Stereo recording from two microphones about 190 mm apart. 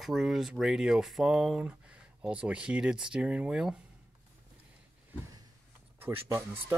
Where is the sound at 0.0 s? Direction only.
Centre (ahead or behind).